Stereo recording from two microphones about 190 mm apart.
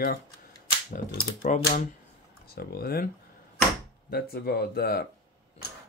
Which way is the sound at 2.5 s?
50° left (ahead or behind).